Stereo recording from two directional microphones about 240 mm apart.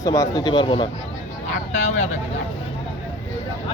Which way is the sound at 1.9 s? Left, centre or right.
Left.